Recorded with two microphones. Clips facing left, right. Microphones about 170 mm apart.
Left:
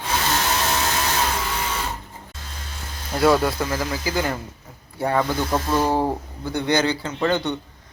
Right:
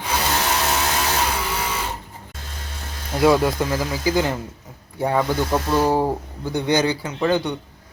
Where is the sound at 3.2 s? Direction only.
15° right (ahead or behind).